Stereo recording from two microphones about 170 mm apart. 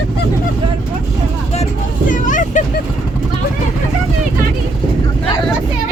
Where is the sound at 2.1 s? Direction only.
50° left (ahead or behind).